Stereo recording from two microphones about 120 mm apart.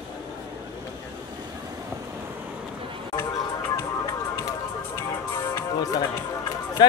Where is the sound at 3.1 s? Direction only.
20° left (ahead or behind).